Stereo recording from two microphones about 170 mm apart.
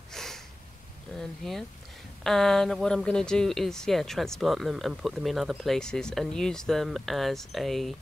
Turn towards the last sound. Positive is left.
turn(degrees=0)  # may be behind; listen again after turning